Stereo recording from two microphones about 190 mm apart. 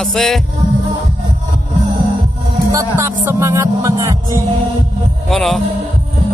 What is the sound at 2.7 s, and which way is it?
Music, 15° right (ahead or behind).